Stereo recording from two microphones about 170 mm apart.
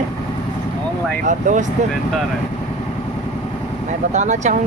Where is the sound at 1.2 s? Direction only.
50° right (ahead or behind).